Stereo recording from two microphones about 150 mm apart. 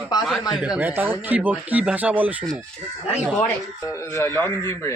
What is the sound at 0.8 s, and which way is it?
Speech, 15° right (ahead or behind).